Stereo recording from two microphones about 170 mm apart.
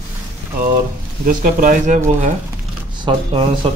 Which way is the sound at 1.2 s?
50° right (ahead or behind).